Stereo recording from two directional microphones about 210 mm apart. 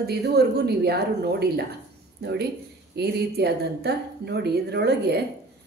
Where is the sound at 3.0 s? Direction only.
50° right (ahead or behind).